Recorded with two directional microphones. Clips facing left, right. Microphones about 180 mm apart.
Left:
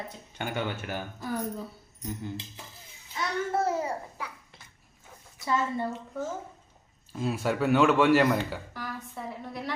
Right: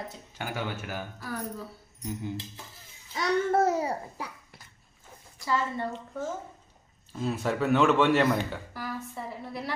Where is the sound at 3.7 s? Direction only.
35° right (ahead or behind).